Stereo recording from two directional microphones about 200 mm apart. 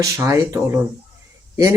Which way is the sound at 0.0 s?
15° right (ahead or behind).